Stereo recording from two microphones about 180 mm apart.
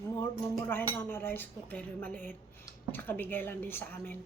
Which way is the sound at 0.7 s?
10° left (ahead or behind).